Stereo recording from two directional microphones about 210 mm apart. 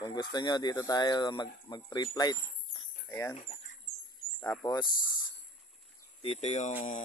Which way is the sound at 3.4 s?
30° left (ahead or behind).